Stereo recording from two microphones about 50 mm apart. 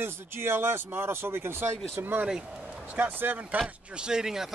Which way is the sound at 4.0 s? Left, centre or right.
Centre.